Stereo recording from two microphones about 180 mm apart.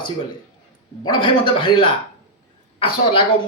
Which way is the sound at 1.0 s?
25° left (ahead or behind).